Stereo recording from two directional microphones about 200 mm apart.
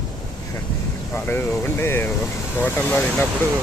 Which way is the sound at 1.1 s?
10° left (ahead or behind).